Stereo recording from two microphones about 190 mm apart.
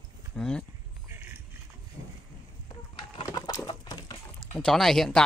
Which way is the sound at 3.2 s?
20° left (ahead or behind).